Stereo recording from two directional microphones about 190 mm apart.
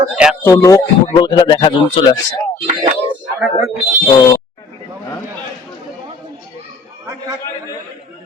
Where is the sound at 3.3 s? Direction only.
10° right (ahead or behind).